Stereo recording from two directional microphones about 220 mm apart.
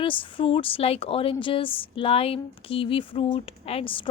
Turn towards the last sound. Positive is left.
turn(degrees=25)  # may be behind; listen again after turning